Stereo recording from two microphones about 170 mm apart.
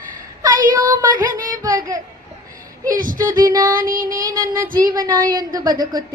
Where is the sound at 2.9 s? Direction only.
55° right (ahead or behind).